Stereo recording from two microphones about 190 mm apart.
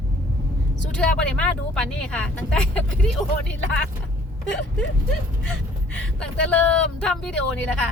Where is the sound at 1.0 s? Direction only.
5° left (ahead or behind).